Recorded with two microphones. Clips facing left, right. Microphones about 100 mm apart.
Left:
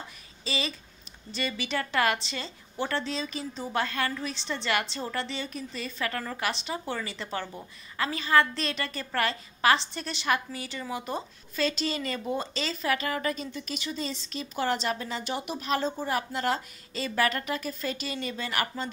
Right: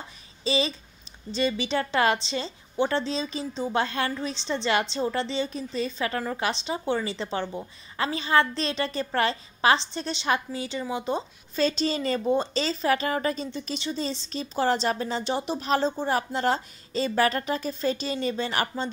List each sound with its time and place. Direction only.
0.4 s a woman's voice: 25° right (ahead or behind)